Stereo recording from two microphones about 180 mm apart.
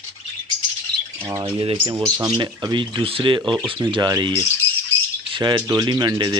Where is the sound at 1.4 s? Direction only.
30° right (ahead or behind).